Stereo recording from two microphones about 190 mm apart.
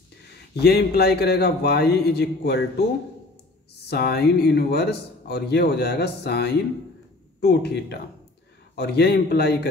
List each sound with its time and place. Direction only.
0.6 s speech: 60° left (ahead or behind)